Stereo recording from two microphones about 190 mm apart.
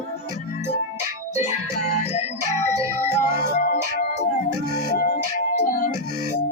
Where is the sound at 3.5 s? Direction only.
45° left (ahead or behind).